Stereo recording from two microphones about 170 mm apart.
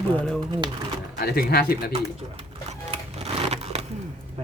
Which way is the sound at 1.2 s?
65° left (ahead or behind).